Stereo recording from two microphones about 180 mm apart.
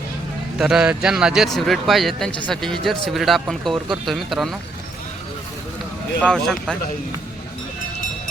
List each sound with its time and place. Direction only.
0.6 s speech: 5° right (ahead or behind)
6.2 s speech: 5° left (ahead or behind)